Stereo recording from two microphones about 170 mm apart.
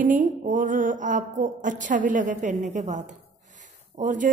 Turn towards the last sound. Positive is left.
turn(degrees=-50)  # may be behind; listen again after turning